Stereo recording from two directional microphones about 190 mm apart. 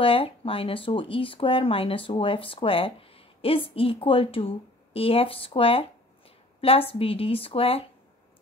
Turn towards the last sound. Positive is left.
turn(degrees=30)  # may be behind; listen again after turning